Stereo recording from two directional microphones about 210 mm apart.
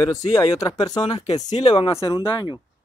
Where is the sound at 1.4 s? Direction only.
30° left (ahead or behind).